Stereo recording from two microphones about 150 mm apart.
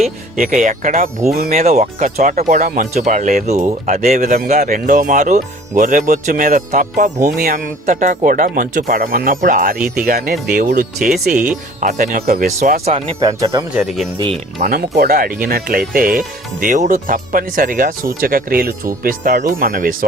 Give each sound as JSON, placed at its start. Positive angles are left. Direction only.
{"t": 0.3, "sound": "speech", "side_deg": -65}
{"t": 1.5, "sound": "speech", "side_deg": -50}
{"t": 10.5, "sound": "speech", "side_deg": -70}
{"t": 11.8, "sound": "speech", "side_deg": -55}
{"t": 12.8, "sound": "speech", "side_deg": -40}
{"t": 13.1, "sound": "speech", "side_deg": -25}
{"t": 13.8, "sound": "speech", "side_deg": 0}
{"t": 14.7, "sound": "speech", "side_deg": -80}
{"t": 15.9, "sound": "speech", "side_deg": -70}